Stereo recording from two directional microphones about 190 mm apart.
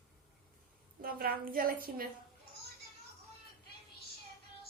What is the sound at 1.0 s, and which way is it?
A woman's voice, 50° right (ahead or behind).